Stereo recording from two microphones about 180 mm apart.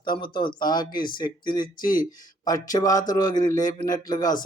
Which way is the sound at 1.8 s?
50° left (ahead or behind).